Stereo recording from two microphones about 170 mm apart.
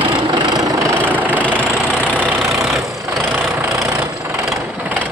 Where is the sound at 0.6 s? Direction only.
20° right (ahead or behind).